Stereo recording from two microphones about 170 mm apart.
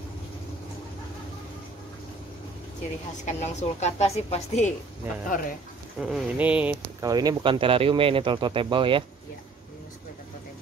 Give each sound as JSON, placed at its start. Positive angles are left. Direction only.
{"t": 3.3, "sound": "a woman's voice", "side_deg": 40}
{"t": 5.3, "sound": "speech", "side_deg": 55}
{"t": 5.9, "sound": "speech", "side_deg": -5}
{"t": 7.0, "sound": "speech", "side_deg": -20}